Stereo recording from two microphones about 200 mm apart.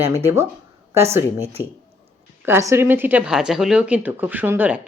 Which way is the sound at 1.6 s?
20° left (ahead or behind).